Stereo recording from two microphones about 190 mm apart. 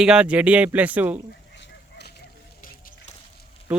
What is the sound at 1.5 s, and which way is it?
Goose, 60° left (ahead or behind).